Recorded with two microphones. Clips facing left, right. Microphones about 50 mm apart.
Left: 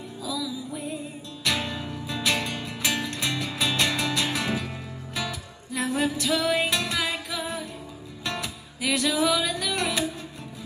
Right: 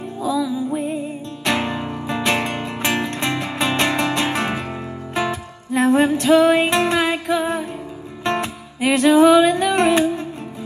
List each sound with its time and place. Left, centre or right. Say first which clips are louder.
0.2 s music: right 11 dB; right